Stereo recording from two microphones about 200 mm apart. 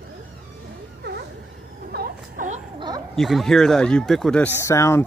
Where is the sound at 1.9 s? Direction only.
45° right (ahead or behind).